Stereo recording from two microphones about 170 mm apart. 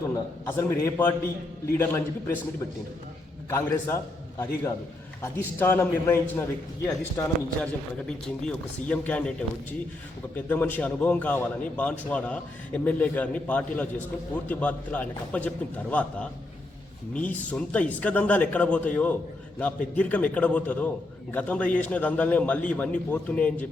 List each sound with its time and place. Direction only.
0.4 s a man's voice: 15° left (ahead or behind)
3.5 s a man's voice: 15° left (ahead or behind)
10.3 s a man's voice: 10° left (ahead or behind)